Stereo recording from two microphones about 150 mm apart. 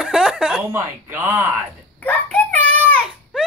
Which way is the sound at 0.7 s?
15° right (ahead or behind).